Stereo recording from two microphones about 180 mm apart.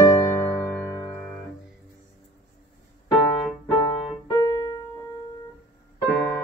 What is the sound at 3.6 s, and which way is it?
Piano, 15° left (ahead or behind).